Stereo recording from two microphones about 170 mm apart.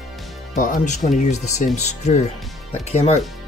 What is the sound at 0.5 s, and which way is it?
Speech, 45° left (ahead or behind).